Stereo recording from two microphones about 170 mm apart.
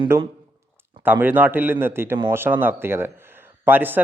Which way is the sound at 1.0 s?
10° right (ahead or behind).